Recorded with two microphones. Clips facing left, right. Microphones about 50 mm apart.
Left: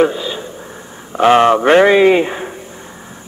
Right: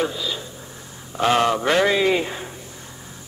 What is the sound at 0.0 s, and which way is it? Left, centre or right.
A man's voice, left.